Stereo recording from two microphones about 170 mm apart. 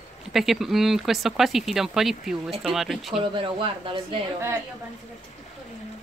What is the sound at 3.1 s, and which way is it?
Speech, 30° right (ahead or behind).